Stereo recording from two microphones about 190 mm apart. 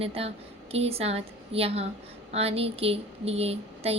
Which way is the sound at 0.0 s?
30° right (ahead or behind).